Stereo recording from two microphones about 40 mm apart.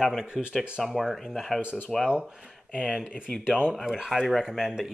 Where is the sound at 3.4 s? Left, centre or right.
Centre.